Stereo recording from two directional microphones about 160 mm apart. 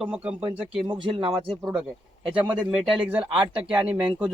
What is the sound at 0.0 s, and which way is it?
Speech, 5° right (ahead or behind).